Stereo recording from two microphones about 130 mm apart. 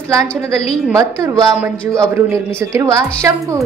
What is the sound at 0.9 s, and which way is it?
A woman's voice, 25° right (ahead or behind).